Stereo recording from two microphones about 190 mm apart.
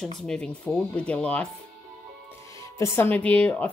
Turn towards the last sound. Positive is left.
turn(degrees=5)  # may be behind; listen again after turning